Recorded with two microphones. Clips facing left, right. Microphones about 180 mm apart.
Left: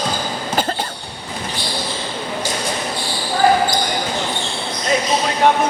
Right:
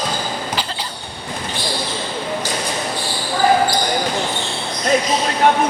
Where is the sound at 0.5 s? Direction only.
50° left (ahead or behind).